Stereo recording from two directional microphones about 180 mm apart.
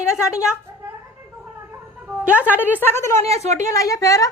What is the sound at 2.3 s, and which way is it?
Speech, 10° right (ahead or behind).